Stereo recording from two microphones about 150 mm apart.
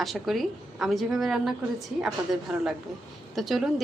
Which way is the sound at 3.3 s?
Centre (ahead or behind).